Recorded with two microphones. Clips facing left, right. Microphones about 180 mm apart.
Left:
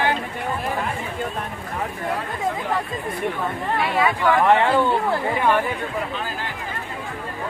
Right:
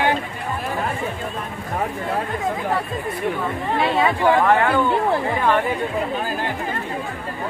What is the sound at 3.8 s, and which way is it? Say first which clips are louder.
Speech: right 3 dB; 25° right (ahead or behind).